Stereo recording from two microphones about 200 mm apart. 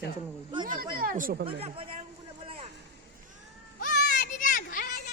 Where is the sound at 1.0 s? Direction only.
45° right (ahead or behind).